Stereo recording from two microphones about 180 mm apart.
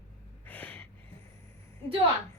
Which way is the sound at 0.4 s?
10° left (ahead or behind).